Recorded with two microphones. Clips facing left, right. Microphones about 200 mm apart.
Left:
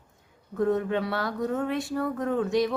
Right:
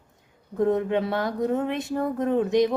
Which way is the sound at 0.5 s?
20° right (ahead or behind).